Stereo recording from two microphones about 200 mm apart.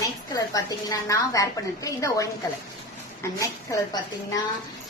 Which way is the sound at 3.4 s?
20° left (ahead or behind).